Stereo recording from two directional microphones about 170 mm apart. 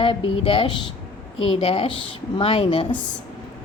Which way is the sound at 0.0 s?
30° left (ahead or behind).